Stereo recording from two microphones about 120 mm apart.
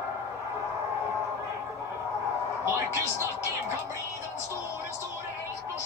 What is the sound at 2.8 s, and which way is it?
Speech, 20° right (ahead or behind).